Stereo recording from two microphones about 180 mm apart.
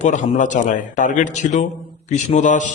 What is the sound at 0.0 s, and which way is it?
A man's voice, 45° left (ahead or behind).